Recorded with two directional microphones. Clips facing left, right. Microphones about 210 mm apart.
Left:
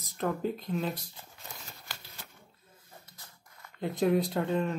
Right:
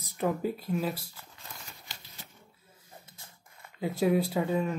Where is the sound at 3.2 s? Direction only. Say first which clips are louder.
Right 1 dB; 25° right (ahead or behind).